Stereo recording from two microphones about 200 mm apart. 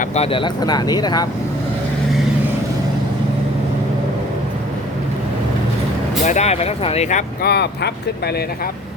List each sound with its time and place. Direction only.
0.0 s speech: 30° left (ahead or behind)
6.2 s speech: 35° left (ahead or behind)
7.4 s speech: 55° left (ahead or behind)